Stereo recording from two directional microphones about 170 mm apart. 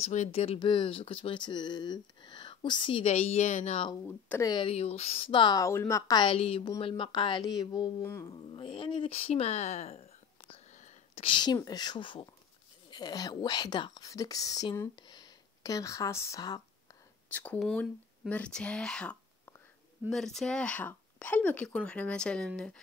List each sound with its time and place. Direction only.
0.0 s speech: 40° left (ahead or behind)
3.9 s speech: 15° left (ahead or behind)
4.5 s speech: 30° left (ahead or behind)
8.0 s speech: 15° left (ahead or behind)
8.3 s speech: 30° left (ahead or behind)
10.5 s whispering: 40° left (ahead or behind)
11.2 s speech: 25° left (ahead or behind)
17.3 s speech: 10° left (ahead or behind)